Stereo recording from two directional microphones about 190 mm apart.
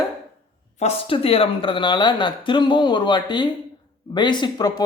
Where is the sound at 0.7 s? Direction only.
35° left (ahead or behind).